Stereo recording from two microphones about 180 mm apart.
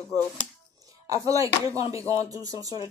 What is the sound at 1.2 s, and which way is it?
Speech, 20° right (ahead or behind).